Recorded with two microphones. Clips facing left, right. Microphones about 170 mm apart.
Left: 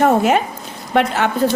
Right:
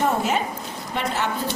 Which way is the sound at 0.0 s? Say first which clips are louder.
Left 8 dB; 65° left (ahead or behind).